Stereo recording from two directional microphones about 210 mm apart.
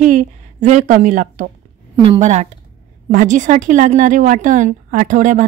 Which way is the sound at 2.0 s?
25° right (ahead or behind).